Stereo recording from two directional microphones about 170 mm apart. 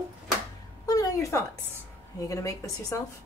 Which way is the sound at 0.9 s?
20° left (ahead or behind).